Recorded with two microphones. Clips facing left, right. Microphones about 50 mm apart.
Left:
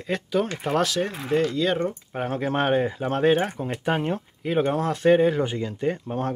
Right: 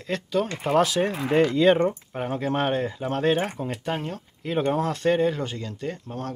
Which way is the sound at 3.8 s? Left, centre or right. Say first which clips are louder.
Left 7 dB; left.